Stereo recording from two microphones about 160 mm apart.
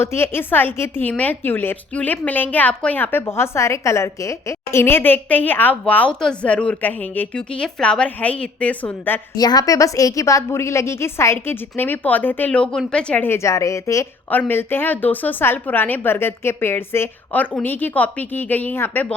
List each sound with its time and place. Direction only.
0.0 s a woman's voice: 15° left (ahead or behind)
9.3 s a woman's voice: 25° left (ahead or behind)